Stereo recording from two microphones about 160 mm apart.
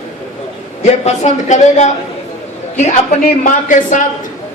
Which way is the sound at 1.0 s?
45° left (ahead or behind).